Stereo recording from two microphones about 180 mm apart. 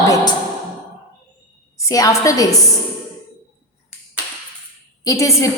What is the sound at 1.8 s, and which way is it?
Speech, 20° left (ahead or behind).